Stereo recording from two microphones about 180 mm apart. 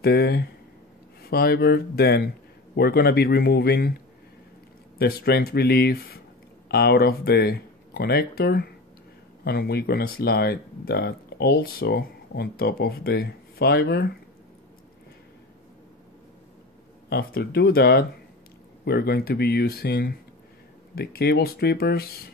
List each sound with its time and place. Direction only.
0.0 s speech: 60° left (ahead or behind)
4.9 s speech: 60° left (ahead or behind)
17.1 s speech: 60° left (ahead or behind)